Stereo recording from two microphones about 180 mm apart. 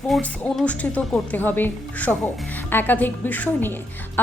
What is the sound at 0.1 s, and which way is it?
A woman's voice, 5° left (ahead or behind).